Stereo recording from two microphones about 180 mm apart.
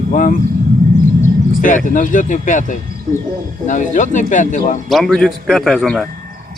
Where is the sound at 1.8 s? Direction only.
45° left (ahead or behind).